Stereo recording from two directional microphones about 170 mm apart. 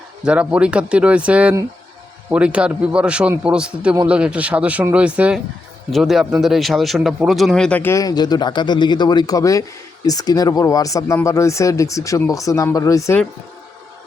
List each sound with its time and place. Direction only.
0.3 s a man's voice: 5° right (ahead or behind); by 13.1 s 20° left (ahead or behind)